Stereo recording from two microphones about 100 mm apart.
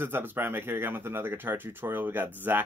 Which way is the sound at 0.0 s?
20° right (ahead or behind).